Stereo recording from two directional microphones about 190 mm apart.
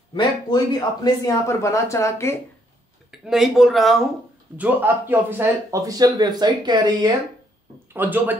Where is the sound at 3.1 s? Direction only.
Centre (ahead or behind); by 7.1 s 25° right (ahead or behind).